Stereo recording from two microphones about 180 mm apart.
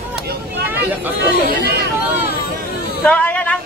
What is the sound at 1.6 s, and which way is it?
Chatter, 65° right (ahead or behind).